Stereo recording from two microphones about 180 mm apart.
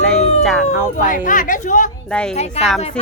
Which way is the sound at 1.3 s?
45° left (ahead or behind).